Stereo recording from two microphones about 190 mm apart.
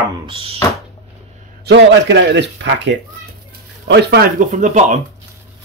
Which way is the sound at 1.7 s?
65° right (ahead or behind).